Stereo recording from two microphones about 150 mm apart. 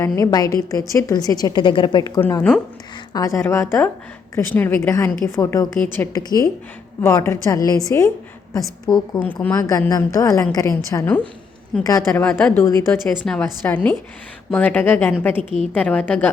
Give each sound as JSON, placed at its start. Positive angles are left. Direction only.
{"t": 0.2, "sound": "a woman's voice", "side_deg": 25}
{"t": 12.2, "sound": "a woman's voice", "side_deg": 5}